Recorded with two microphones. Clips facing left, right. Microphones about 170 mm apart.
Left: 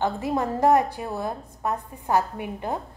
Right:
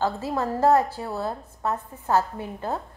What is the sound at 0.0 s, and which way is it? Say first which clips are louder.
A woman's voice: left 1 dB; 20° left (ahead or behind).